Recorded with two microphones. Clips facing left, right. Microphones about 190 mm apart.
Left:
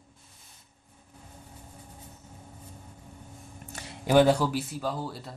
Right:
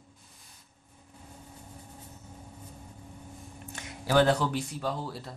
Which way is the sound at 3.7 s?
35° left (ahead or behind).